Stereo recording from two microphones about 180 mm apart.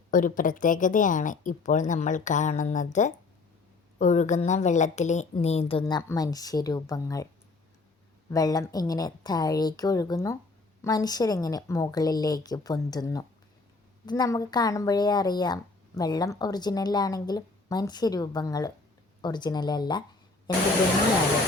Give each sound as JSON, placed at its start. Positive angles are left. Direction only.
{"t": 0.1, "sound": "a woman's voice", "side_deg": 50}
{"t": 5.8, "sound": "a woman's voice", "side_deg": 15}
{"t": 8.3, "sound": "a woman's voice", "side_deg": 20}